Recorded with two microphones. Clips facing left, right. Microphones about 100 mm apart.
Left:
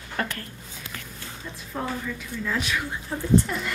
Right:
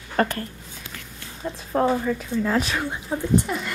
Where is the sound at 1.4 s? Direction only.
50° right (ahead or behind).